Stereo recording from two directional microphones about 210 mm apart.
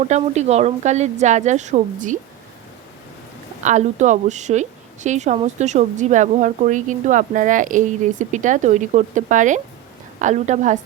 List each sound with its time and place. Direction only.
0.0 s a woman's voice: 35° right (ahead or behind)
3.6 s a woman's voice: 35° right (ahead or behind)